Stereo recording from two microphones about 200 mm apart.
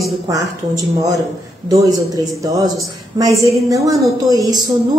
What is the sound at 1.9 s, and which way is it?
A woman's voice, 20° right (ahead or behind).